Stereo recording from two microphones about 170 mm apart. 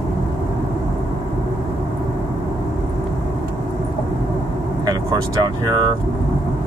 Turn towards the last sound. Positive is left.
turn(degrees=-25)  # may be behind; listen again after turning